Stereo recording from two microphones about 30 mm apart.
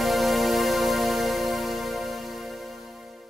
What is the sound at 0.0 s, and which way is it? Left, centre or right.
Music, centre.